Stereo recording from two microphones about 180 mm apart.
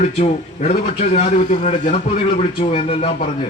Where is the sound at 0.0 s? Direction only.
35° left (ahead or behind).